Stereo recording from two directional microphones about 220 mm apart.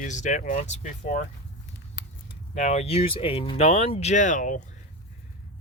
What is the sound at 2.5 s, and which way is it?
Speech, 30° left (ahead or behind).